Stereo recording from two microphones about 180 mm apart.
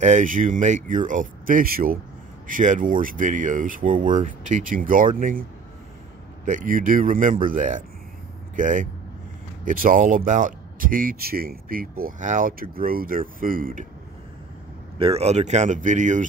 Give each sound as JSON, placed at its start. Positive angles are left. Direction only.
{"t": 0.0, "sound": "speech", "side_deg": -40}
{"t": 15.0, "sound": "speech", "side_deg": -35}